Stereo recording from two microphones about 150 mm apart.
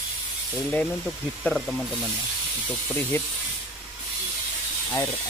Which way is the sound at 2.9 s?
10° left (ahead or behind).